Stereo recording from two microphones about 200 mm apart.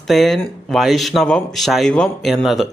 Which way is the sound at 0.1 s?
Centre (ahead or behind).